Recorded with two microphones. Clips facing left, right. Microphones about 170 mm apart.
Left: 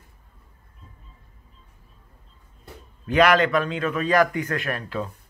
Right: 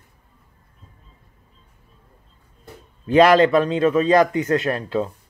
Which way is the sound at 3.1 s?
30° right (ahead or behind).